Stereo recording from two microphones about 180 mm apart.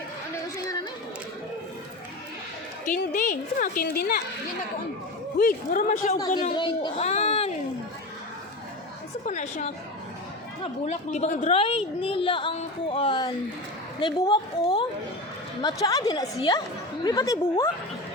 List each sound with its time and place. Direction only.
2.8 s a woman's voice: 45° left (ahead or behind)
5.4 s a woman's voice: 50° left (ahead or behind)
6.1 s a woman's voice: 20° left (ahead or behind)
7.1 s speech: 35° left (ahead or behind)
9.2 s a woman's voice: 40° left (ahead or behind); by 17.7 s 20° left (ahead or behind)